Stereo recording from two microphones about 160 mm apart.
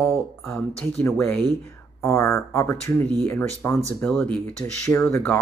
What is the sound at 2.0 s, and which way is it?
Speech, 15° left (ahead or behind).